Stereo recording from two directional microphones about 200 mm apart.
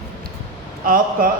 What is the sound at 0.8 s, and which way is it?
Speech, 45° right (ahead or behind).